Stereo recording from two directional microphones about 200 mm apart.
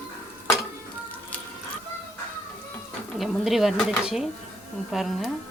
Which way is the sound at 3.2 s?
Centre (ahead or behind).